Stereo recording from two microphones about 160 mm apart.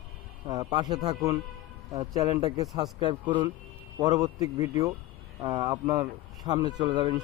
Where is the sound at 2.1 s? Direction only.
20° right (ahead or behind).